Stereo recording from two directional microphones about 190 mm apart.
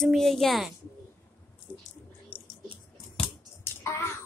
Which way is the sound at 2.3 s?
10° left (ahead or behind).